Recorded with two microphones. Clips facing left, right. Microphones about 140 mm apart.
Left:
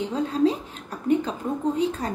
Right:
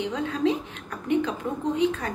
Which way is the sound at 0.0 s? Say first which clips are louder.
Left 3 dB; 35° left (ahead or behind).